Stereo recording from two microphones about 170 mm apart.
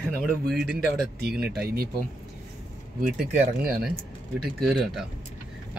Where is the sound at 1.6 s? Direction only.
60° right (ahead or behind).